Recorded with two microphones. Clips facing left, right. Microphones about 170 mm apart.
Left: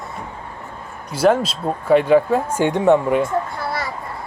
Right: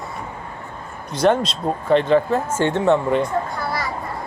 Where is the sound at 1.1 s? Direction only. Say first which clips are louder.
Left 1 dB; 5° left (ahead or behind).